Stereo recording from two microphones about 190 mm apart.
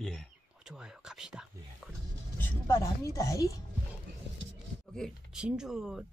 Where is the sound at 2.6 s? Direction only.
15° left (ahead or behind).